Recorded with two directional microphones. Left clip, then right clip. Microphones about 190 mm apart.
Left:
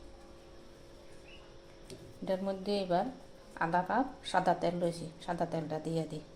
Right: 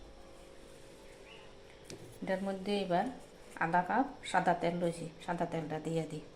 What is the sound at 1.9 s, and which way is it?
A woman's voice, centre (ahead or behind).